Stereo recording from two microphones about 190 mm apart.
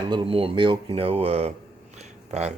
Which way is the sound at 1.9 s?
35° right (ahead or behind).